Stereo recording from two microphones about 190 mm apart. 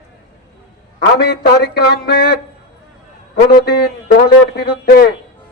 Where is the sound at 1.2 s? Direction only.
55° left (ahead or behind).